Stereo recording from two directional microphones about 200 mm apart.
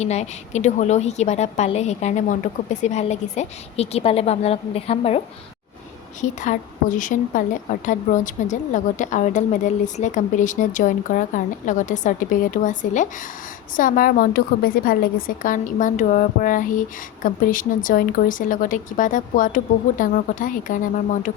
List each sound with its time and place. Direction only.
0.0 s a woman's voice: 35° left (ahead or behind)
6.2 s a woman's voice: 40° left (ahead or behind)